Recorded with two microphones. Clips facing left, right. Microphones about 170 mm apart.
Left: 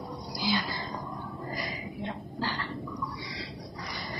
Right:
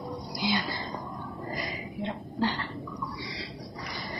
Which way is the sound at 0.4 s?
20° right (ahead or behind).